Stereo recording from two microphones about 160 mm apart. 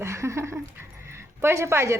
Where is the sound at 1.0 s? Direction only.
15° right (ahead or behind).